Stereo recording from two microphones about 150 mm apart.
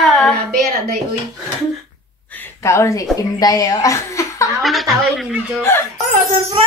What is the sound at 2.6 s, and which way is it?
A woman's voice, 20° left (ahead or behind).